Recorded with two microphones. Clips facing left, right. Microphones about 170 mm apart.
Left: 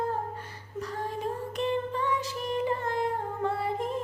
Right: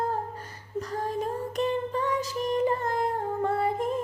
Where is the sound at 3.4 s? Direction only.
45° right (ahead or behind).